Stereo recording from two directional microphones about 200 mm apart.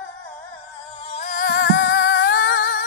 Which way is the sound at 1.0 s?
35° left (ahead or behind).